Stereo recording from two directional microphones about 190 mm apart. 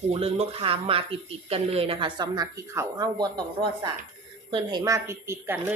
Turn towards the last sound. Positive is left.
turn(degrees=-15)  # may be behind; listen again after turning